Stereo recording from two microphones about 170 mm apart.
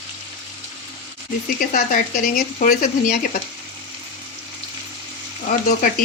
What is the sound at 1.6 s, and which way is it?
Speech, 55° left (ahead or behind).